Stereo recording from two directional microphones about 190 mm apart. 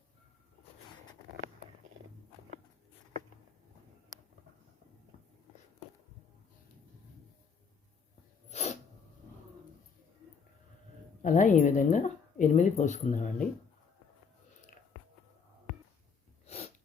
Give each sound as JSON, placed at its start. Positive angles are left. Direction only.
{"t": 8.4, "sound": "sneeze", "side_deg": 35}
{"t": 11.2, "sound": "speech", "side_deg": 40}